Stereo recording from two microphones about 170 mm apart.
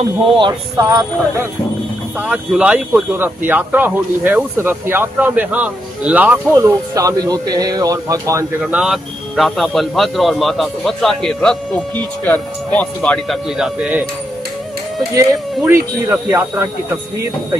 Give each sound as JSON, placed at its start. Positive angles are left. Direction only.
{"t": 0.4, "sound": "speech", "side_deg": -25}
{"t": 0.8, "sound": "speech", "side_deg": -15}
{"t": 6.5, "sound": "speech", "side_deg": -20}
{"t": 8.7, "sound": "speech", "side_deg": 0}
{"t": 13.6, "sound": "speech", "side_deg": -5}
{"t": 15.1, "sound": "speech", "side_deg": -15}